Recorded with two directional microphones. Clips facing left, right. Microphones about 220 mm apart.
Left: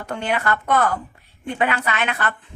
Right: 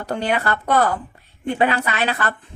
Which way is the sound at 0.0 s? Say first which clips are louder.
Right 2 dB; 35° right (ahead or behind).